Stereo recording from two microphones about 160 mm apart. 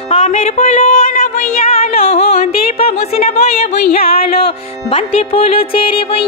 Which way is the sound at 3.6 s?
75° left (ahead or behind).